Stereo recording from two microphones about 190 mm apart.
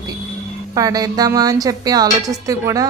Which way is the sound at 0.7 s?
20° right (ahead or behind).